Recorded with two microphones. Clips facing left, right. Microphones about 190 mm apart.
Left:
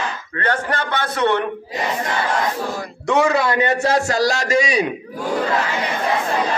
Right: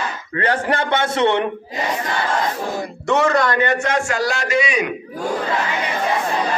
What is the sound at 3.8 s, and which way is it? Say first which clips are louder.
Speech: left 3 dB; 35° left (ahead or behind).